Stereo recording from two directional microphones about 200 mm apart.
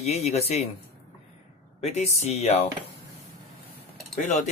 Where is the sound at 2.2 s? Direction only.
35° left (ahead or behind).